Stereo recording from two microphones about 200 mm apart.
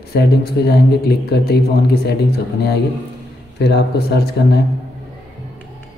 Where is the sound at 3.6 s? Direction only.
55° left (ahead or behind).